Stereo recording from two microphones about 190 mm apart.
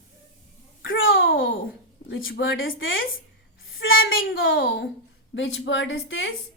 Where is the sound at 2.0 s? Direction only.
60° left (ahead or behind).